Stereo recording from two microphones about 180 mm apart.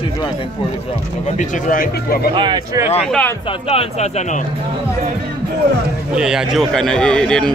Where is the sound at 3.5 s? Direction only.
30° left (ahead or behind).